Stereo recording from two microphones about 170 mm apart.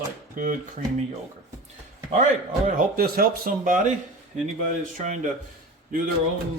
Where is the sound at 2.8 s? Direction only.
60° right (ahead or behind).